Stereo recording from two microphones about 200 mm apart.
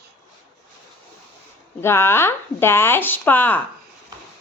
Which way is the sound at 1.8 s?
10° left (ahead or behind).